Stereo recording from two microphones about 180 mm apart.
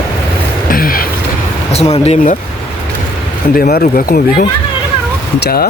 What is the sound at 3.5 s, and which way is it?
Speech, 55° left (ahead or behind).